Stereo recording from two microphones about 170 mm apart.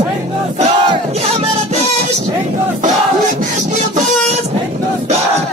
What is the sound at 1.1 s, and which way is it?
Music, 40° right (ahead or behind).